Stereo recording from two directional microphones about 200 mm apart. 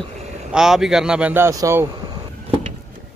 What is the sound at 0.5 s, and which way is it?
Speech, 5° right (ahead or behind).